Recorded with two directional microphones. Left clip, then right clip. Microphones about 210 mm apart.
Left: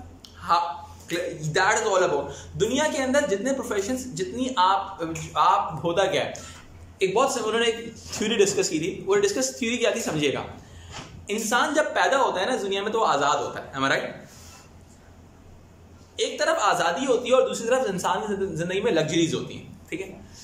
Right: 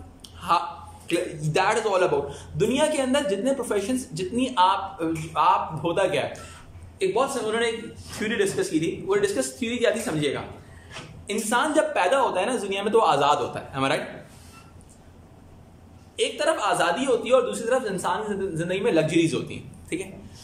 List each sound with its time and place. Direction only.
0.4 s a man's voice: 10° right (ahead or behind)
16.2 s a man's voice: 5° right (ahead or behind)